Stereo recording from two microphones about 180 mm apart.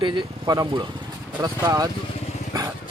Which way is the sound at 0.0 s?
25° right (ahead or behind).